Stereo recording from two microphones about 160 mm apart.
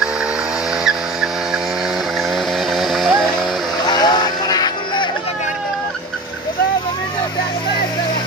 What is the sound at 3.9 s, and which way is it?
Music, 25° left (ahead or behind).